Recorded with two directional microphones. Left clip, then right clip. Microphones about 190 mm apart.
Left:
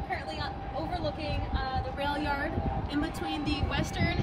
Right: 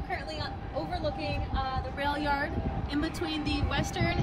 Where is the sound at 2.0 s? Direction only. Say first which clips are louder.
Right 3 dB; 20° right (ahead or behind).